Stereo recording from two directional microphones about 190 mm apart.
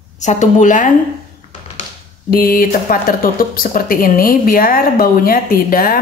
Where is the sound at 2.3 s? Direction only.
50° left (ahead or behind).